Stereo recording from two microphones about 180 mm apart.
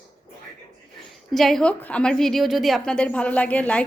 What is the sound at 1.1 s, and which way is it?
A woman's voice, centre (ahead or behind).